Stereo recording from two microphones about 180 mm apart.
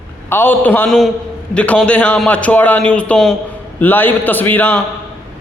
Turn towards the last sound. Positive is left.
turn(degrees=10)  # may be behind; listen again after turning